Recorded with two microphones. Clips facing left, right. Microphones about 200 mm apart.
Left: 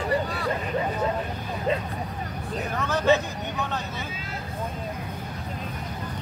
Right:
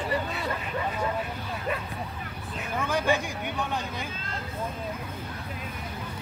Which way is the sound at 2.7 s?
10° right (ahead or behind).